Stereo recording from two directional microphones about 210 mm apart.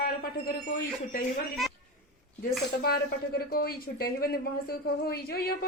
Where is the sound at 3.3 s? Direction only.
45° left (ahead or behind).